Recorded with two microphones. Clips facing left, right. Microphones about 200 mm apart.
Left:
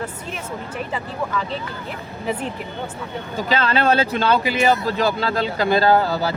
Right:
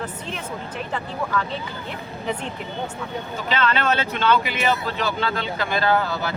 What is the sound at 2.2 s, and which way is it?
Speech, 5° left (ahead or behind).